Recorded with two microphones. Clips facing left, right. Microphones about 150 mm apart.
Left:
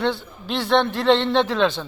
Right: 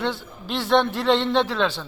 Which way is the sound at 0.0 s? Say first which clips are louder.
Left 3 dB; 10° right (ahead or behind).